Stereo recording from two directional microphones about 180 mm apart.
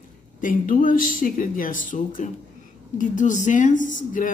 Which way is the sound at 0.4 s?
50° left (ahead or behind).